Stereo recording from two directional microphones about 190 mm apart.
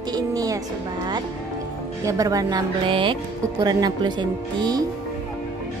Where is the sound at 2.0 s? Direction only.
20° right (ahead or behind).